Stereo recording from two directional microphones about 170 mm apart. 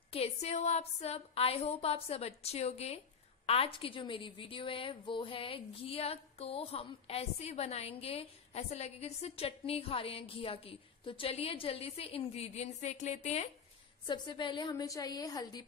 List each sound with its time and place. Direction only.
0.1 s a woman's voice: 40° left (ahead or behind)
14.0 s a woman's voice: 25° left (ahead or behind)